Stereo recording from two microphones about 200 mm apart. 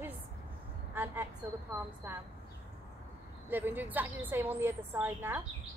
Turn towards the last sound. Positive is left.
turn(degrees=-10)  # may be behind; listen again after turning